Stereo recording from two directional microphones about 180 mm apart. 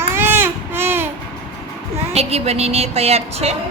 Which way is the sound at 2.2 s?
35° right (ahead or behind).